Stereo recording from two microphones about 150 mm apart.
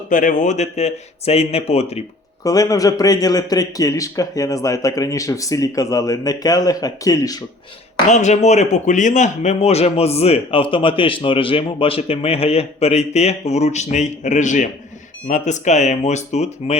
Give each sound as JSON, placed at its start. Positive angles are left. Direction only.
{"t": 0.1, "sound": "speech", "side_deg": 60}
{"t": 2.4, "sound": "a man's voice", "side_deg": 25}
{"t": 8.1, "sound": "speech", "side_deg": 50}